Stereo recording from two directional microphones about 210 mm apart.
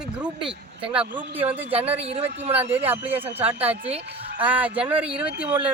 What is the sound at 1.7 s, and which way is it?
Speech, 30° right (ahead or behind).